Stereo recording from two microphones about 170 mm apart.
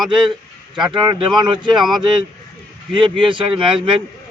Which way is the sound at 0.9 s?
25° right (ahead or behind).